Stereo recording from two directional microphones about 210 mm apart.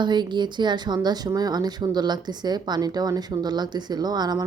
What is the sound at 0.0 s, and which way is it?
Speech, 20° right (ahead or behind).